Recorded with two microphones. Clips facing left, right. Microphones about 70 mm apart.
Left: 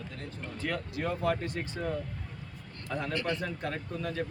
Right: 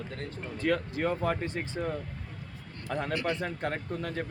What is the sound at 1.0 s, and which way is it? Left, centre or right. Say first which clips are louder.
Speech: right 1 dB; right.